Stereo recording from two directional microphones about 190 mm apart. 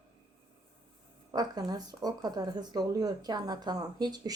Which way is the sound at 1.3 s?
20° right (ahead or behind).